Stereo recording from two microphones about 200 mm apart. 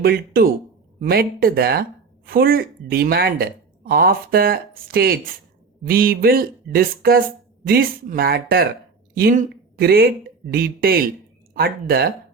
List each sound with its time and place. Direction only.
0.0 s speech: 50° right (ahead or behind)